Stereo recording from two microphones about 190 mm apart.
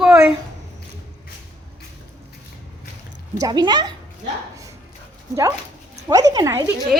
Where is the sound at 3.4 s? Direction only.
20° right (ahead or behind).